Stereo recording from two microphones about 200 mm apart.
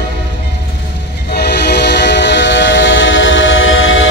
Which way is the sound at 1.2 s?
55° left (ahead or behind).